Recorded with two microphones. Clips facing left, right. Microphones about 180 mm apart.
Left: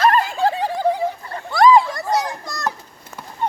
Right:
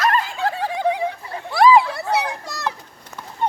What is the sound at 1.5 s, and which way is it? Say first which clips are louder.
Children playing: left 1 dB; 5° right (ahead or behind).